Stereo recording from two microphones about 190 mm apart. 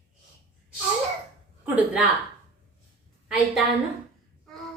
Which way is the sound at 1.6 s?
10° right (ahead or behind).